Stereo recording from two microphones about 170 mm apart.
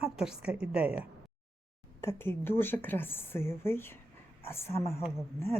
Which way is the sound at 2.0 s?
15° left (ahead or behind).